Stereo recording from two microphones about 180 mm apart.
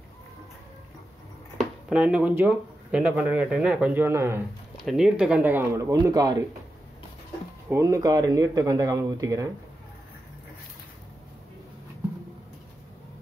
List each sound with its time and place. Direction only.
1.9 s speech: 5° right (ahead or behind)
4.7 s speech: centre (ahead or behind); by 6.4 s 20° right (ahead or behind)
7.7 s speech: 20° right (ahead or behind)